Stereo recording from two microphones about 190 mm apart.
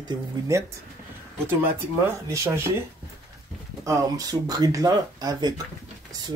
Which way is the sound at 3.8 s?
20° right (ahead or behind).